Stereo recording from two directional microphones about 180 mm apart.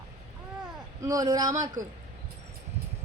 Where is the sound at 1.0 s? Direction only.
20° right (ahead or behind).